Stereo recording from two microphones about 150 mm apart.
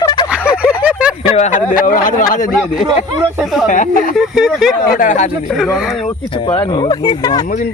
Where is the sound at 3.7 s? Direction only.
60° left (ahead or behind).